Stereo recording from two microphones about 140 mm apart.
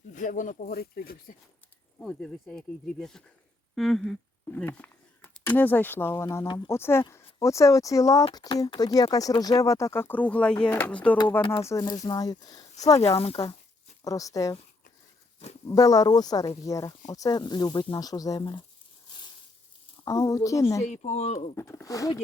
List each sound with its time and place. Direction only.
0.1 s speech: 65° left (ahead or behind); by 1.4 s 90° left
2.0 s speech: 5° left (ahead or behind)
11.4 s speech: 40° left (ahead or behind)
11.7 s speech: 25° left (ahead or behind)
13.0 s speech: 45° left (ahead or behind)
14.0 s speech: 25° left (ahead or behind)
15.6 s speech: 25° left (ahead or behind)
20.1 s speech: 20° left (ahead or behind)
20.8 s speech: 55° left (ahead or behind)
21.5 s speech: 20° left (ahead or behind)